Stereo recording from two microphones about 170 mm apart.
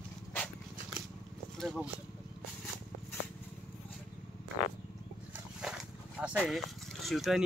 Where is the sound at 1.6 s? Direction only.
Centre (ahead or behind).